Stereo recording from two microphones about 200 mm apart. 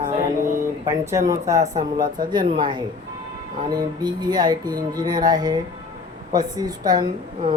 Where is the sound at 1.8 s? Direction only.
40° right (ahead or behind).